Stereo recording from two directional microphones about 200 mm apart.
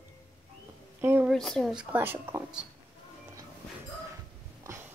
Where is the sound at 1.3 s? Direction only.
Centre (ahead or behind).